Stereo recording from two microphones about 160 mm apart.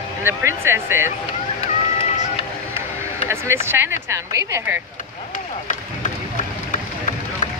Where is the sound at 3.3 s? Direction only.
15° right (ahead or behind).